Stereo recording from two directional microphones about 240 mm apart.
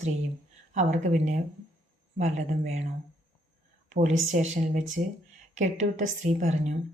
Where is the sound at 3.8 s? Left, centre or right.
Right.